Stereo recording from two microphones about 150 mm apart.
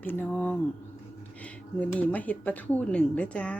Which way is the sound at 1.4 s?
10° left (ahead or behind).